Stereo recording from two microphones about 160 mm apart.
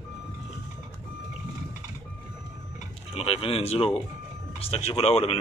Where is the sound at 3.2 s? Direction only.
35° left (ahead or behind).